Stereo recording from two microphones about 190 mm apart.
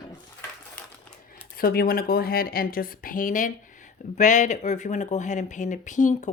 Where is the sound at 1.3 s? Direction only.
50° left (ahead or behind).